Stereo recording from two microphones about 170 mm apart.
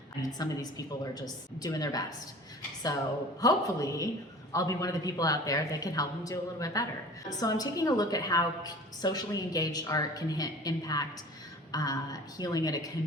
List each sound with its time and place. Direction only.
0.2 s a woman's voice: 20° left (ahead or behind)
3.4 s a woman's voice: 20° left (ahead or behind)